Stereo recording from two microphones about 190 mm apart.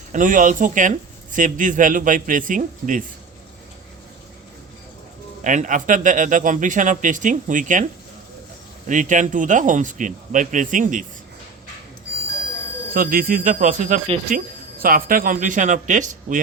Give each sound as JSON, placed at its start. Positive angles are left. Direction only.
{"t": 0.1, "sound": "speech", "side_deg": -45}
{"t": 5.4, "sound": "speech", "side_deg": -40}
{"t": 8.9, "sound": "speech", "side_deg": -40}
{"t": 12.9, "sound": "speech", "side_deg": -50}